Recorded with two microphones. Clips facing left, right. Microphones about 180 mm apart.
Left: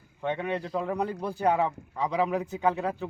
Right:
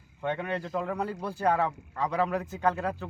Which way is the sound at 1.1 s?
15° left (ahead or behind).